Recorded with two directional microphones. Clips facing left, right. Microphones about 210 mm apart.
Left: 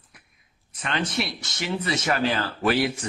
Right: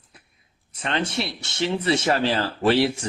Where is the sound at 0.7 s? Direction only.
30° right (ahead or behind).